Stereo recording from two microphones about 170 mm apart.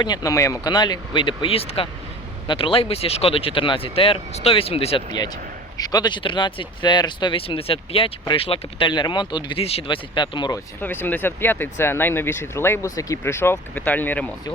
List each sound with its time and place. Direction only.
0.0 s speech: 25° left (ahead or behind)
5.8 s speech: 25° left (ahead or behind)
10.8 s speech: 10° left (ahead or behind)